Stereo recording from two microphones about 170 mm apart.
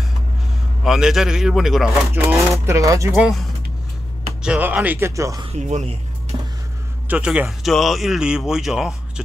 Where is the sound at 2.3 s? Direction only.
15° right (ahead or behind).